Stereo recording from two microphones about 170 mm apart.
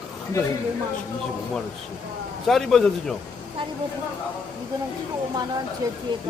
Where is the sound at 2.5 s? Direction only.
Centre (ahead or behind).